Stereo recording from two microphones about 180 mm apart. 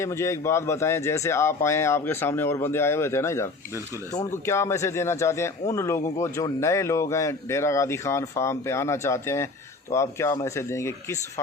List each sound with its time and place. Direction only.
0.0 s speech: 15° left (ahead or behind)